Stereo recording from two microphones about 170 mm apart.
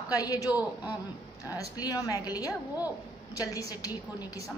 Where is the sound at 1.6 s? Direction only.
20° left (ahead or behind).